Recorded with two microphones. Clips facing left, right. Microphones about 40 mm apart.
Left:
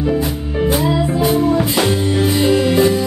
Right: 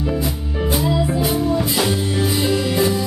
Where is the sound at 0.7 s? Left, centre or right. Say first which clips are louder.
Left 3 dB; centre.